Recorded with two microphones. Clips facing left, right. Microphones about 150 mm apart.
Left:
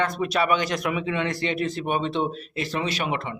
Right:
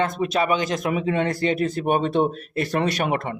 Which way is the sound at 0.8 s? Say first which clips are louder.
Right 3 dB; 40° right (ahead or behind).